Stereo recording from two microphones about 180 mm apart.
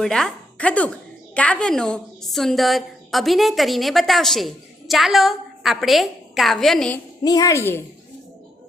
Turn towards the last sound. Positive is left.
turn(degrees=15)  # may be behind; listen again after turning